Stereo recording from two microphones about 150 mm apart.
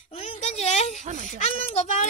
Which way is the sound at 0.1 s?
45° left (ahead or behind).